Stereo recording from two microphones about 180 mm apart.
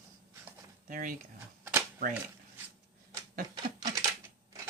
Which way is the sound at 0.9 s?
50° right (ahead or behind).